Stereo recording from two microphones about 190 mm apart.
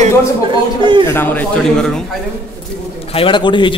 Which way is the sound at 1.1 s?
10° left (ahead or behind).